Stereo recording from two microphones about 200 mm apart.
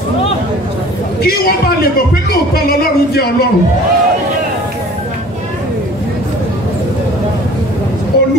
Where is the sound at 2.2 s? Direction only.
50° left (ahead or behind).